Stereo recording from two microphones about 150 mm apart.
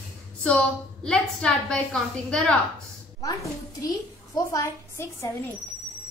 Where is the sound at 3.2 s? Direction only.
25° left (ahead or behind).